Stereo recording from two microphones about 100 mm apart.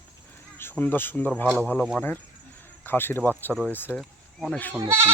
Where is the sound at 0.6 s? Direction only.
20° left (ahead or behind).